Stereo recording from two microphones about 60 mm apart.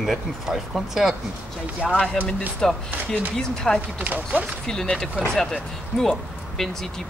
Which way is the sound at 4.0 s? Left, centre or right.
Right.